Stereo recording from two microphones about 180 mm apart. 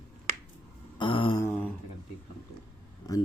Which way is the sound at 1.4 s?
10° left (ahead or behind).